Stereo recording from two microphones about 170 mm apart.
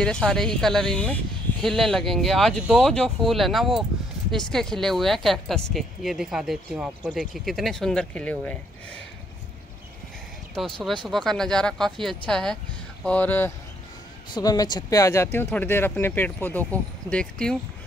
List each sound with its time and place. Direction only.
0.0 s speech: 5° left (ahead or behind)
10.6 s speech: centre (ahead or behind)
14.3 s speech: 20° left (ahead or behind); by 17.6 s 5° left (ahead or behind)